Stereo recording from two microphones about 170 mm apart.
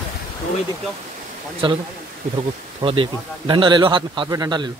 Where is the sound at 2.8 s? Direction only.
30° right (ahead or behind).